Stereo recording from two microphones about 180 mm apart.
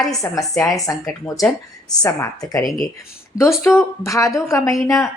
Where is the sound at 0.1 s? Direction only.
20° left (ahead or behind).